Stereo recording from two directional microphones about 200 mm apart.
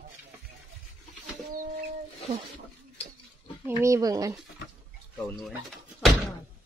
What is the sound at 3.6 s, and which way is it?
Speech, 15° right (ahead or behind).